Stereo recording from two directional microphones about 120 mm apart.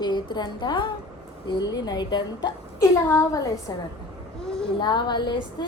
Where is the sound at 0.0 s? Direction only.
40° left (ahead or behind).